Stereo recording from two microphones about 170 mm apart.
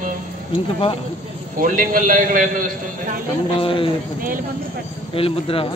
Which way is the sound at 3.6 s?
30° left (ahead or behind).